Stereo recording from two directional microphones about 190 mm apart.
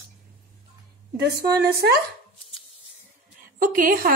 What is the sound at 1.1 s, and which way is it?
Speech, 55° right (ahead or behind).